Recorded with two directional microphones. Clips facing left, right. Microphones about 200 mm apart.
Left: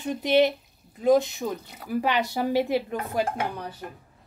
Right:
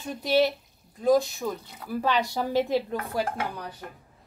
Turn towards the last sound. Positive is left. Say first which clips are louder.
# left 2 dB
turn(degrees=20)  # may be behind; listen again after turning